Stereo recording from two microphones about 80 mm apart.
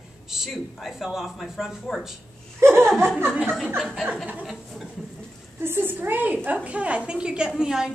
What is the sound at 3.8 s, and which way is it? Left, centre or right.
Speech, centre.